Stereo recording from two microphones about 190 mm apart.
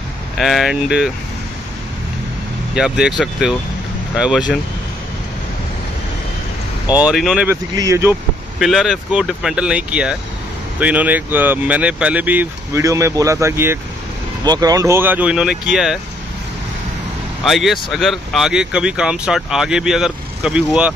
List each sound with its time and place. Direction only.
0.4 s speech: centre (ahead or behind)
2.7 s speech: 5° right (ahead or behind)
7.0 s speech: 5° right (ahead or behind)
7.7 s speech: 15° right (ahead or behind)
8.5 s speech: centre (ahead or behind)
17.5 s speech: centre (ahead or behind)